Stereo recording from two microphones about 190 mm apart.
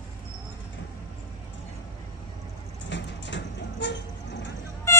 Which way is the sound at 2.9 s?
70° left (ahead or behind).